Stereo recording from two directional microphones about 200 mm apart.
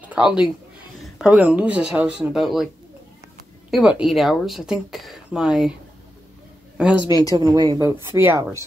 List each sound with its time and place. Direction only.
0.1 s a man's voice: 5° right (ahead or behind)
3.7 s a woman's voice: 5° right (ahead or behind)
6.8 s a woman's voice: 5° right (ahead or behind)
7.3 s a woman's voice: 20° right (ahead or behind)